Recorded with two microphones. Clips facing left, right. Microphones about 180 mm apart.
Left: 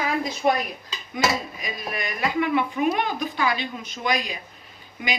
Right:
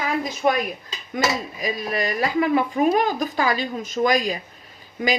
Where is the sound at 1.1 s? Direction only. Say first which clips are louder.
Right 1 dB; 35° right (ahead or behind).